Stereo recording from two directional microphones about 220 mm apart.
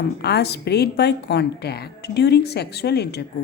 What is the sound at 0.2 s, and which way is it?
A woman's voice, 50° left (ahead or behind).